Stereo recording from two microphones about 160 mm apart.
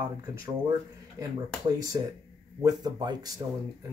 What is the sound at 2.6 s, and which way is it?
Speech, 25° right (ahead or behind).